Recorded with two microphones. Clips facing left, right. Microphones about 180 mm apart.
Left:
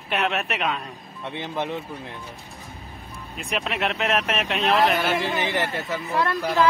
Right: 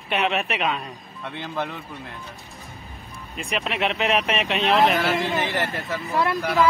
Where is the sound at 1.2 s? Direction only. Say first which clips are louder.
Left 1 dB; 20° left (ahead or behind).